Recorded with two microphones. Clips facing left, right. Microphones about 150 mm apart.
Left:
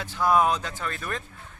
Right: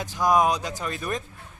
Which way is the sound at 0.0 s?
15° right (ahead or behind).